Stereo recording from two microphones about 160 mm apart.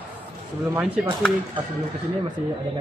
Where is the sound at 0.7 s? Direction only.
10° right (ahead or behind).